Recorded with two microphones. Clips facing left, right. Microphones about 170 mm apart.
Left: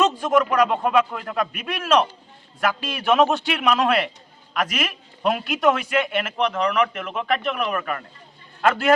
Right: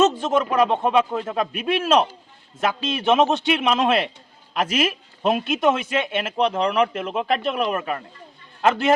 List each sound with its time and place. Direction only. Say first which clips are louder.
0.0 s speech: right 1 dB; 25° right (ahead or behind)